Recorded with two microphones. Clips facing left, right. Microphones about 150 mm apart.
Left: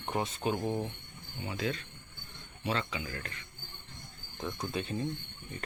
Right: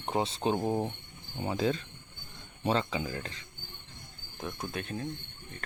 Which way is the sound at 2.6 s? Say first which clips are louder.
Right 5 dB; 35° right (ahead or behind).